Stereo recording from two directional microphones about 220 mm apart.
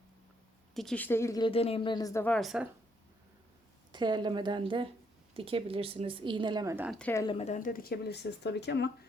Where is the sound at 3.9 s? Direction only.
20° right (ahead or behind).